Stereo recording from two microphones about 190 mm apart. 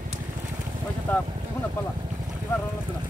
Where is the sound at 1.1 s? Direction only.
10° left (ahead or behind).